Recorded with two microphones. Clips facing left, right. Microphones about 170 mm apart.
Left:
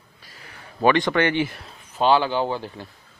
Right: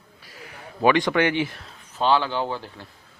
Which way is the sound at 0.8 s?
10° right (ahead or behind).